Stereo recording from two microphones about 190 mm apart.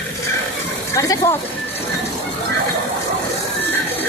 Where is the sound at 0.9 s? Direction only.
15° left (ahead or behind).